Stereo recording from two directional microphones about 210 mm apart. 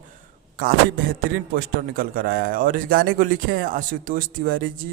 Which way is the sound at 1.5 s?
40° right (ahead or behind).